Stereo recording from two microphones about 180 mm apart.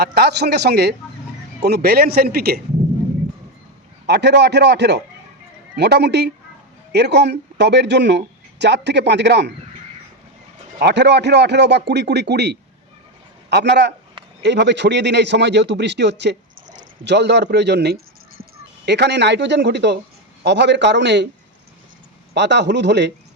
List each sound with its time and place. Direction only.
0.0 s speech: 65° right (ahead or behind)
4.0 s speech: 70° right (ahead or behind)
10.8 s speech: 70° right (ahead or behind)
22.4 s speech: 75° right (ahead or behind)